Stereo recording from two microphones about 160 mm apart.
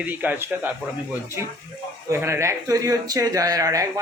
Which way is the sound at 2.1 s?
15° right (ahead or behind).